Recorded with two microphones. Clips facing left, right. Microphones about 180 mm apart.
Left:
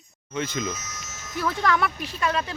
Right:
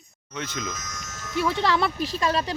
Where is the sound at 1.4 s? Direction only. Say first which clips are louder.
Right 1 dB; 25° right (ahead or behind).